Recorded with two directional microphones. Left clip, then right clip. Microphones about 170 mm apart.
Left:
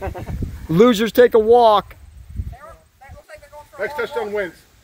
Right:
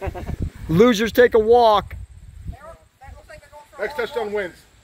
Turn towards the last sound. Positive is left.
turn(degrees=55)  # may be behind; listen again after turning